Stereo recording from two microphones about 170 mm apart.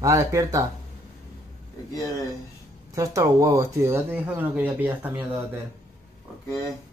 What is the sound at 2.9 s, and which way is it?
Speech, 20° right (ahead or behind).